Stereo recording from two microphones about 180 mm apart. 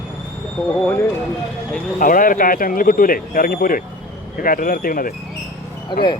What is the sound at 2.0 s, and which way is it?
Speech, 50° left (ahead or behind).